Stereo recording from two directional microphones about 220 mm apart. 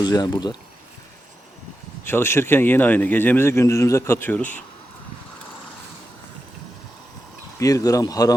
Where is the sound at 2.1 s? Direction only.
10° left (ahead or behind).